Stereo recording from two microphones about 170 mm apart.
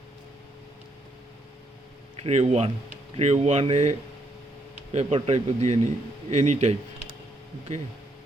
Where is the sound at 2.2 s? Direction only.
40° right (ahead or behind).